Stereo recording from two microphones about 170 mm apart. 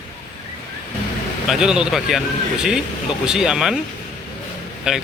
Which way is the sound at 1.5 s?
5° right (ahead or behind).